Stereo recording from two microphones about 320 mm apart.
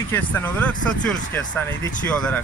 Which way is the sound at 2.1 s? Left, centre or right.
Centre.